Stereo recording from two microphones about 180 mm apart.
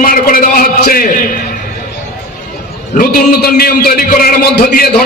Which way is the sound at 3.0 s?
60° left (ahead or behind).